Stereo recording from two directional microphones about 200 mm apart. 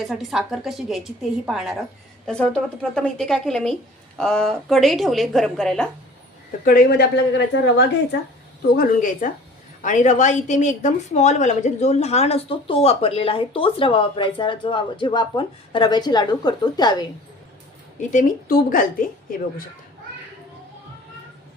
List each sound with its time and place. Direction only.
0.0 s a woman's voice: centre (ahead or behind)
6.7 s speech: 50° left (ahead or behind)
8.7 s a woman's voice: 45° left (ahead or behind); by 17.1 s 20° left (ahead or behind)
18.1 s speech: 45° left (ahead or behind)